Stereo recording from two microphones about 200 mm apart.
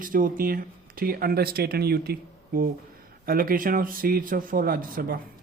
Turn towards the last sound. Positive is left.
turn(degrees=-45)  # may be behind; listen again after turning